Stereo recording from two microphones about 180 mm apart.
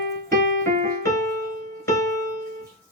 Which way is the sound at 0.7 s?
45° right (ahead or behind).